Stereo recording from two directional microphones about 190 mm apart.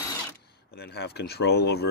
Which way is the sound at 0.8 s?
60° left (ahead or behind).